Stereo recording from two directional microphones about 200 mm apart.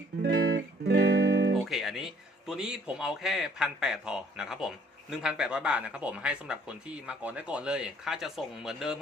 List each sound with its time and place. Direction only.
0.2 s music: 55° right (ahead or behind)
1.7 s speech: centre (ahead or behind)